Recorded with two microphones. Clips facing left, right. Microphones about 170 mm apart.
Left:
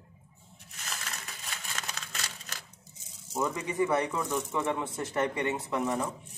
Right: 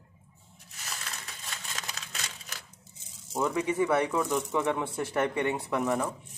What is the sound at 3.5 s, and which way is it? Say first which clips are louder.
Speech: right 3 dB; 10° right (ahead or behind).